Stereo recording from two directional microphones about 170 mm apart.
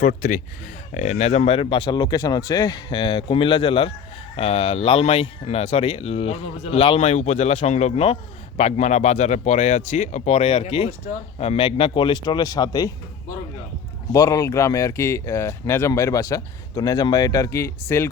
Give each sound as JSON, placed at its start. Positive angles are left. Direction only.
{"t": 0.2, "sound": "speech", "side_deg": 50}
{"t": 14.1, "sound": "speech", "side_deg": 20}